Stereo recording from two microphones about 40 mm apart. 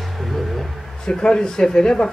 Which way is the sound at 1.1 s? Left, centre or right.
Centre.